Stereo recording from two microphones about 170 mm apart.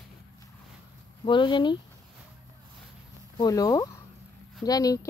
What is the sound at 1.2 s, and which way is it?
Speech, 30° left (ahead or behind).